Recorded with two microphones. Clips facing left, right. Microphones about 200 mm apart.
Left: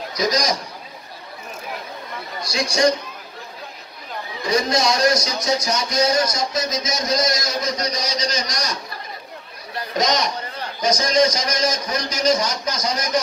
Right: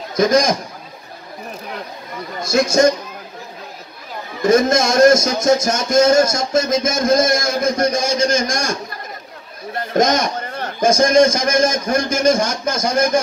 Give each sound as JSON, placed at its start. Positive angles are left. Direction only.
{"t": 0.1, "sound": "speech", "side_deg": -50}
{"t": 2.4, "sound": "speech", "side_deg": -45}
{"t": 4.4, "sound": "speech", "side_deg": -45}
{"t": 9.8, "sound": "speech", "side_deg": -50}